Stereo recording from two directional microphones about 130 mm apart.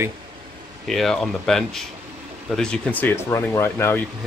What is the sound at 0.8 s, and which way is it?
Speech, centre (ahead or behind).